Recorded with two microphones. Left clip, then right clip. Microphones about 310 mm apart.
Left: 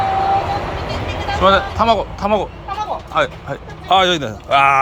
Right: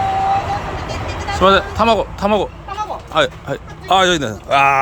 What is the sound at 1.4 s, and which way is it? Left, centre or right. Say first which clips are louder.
Speech: right 1 dB; right.